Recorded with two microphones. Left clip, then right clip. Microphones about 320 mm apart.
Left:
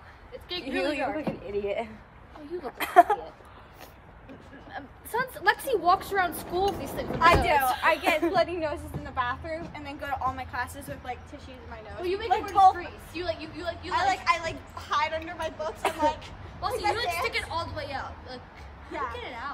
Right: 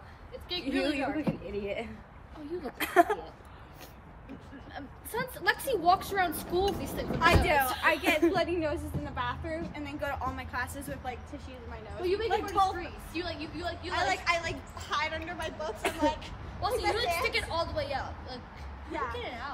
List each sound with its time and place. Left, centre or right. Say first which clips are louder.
0.5 s a woman's voice: left 2 dB; left
1.6 s a woman's voice: left 5 dB; centre
4.7 s a woman's voice: left 5 dB; left
7.8 s a woman's voice: left 2 dB; centre